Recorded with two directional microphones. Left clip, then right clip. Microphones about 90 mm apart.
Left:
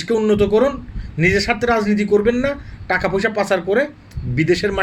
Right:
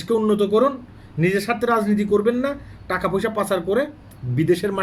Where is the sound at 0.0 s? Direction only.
30° right (ahead or behind).